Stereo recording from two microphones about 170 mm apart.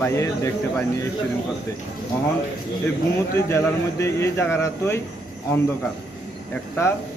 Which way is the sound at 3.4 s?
15° left (ahead or behind).